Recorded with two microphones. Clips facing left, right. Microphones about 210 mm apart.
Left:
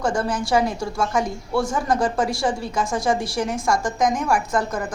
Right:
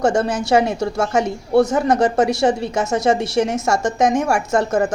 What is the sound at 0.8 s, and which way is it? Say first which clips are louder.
Speech: right 4 dB; 70° right (ahead or behind).